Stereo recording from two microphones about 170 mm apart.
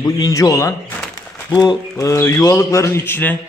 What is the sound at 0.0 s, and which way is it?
Speech, 20° left (ahead or behind).